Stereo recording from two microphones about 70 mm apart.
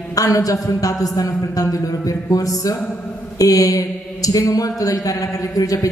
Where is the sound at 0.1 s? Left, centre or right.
Left.